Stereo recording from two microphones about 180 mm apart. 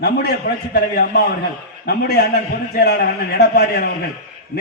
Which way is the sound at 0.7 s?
60° left (ahead or behind).